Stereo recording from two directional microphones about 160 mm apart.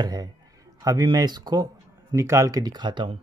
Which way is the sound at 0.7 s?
25° right (ahead or behind).